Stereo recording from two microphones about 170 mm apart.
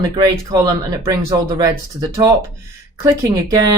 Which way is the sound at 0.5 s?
25° right (ahead or behind).